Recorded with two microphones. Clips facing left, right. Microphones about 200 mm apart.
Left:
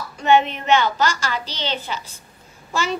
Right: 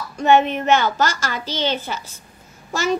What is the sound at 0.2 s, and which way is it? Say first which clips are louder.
A child's voice: right 2 dB; 45° right (ahead or behind).